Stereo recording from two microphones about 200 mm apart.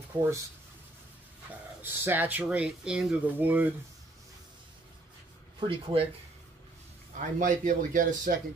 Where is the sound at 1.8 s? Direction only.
10° right (ahead or behind).